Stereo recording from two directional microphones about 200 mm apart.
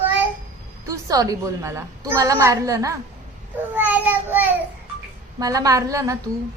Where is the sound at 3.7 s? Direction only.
10° right (ahead or behind).